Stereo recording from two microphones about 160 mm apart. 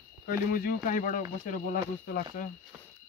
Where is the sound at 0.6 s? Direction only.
60° left (ahead or behind).